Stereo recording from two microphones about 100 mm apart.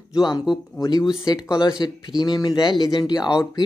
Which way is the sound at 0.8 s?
40° left (ahead or behind).